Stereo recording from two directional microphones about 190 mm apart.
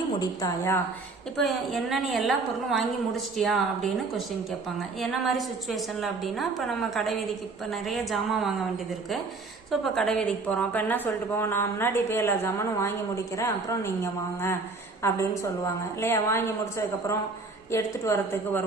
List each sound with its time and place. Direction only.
0.2 s a woman's voice: 15° left (ahead or behind)
1.4 s a woman's voice: centre (ahead or behind)
9.8 s a woman's voice: centre (ahead or behind)